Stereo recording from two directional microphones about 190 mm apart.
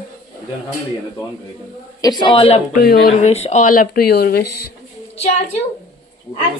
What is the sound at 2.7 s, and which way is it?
Speech, 50° left (ahead or behind).